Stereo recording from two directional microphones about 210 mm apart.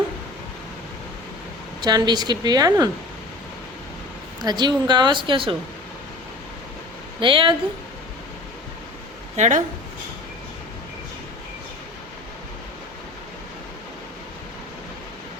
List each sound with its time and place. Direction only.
1.8 s a woman's voice: 20° right (ahead or behind)
4.4 s a woman's voice: 20° right (ahead or behind)
7.2 s a woman's voice: 25° right (ahead or behind)
9.3 s speech: 35° right (ahead or behind)